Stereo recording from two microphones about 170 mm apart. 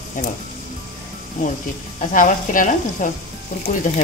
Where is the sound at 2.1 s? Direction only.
50° left (ahead or behind).